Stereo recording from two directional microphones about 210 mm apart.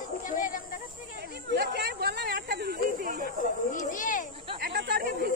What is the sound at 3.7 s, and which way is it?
Children playing, 40° left (ahead or behind).